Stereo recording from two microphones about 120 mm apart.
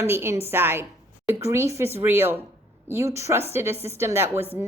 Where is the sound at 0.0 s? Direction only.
20° right (ahead or behind).